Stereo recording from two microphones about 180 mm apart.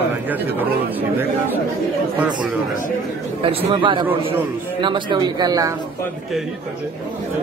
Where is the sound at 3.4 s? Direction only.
30° right (ahead or behind).